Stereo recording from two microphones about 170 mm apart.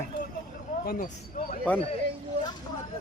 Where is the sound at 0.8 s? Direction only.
60° left (ahead or behind).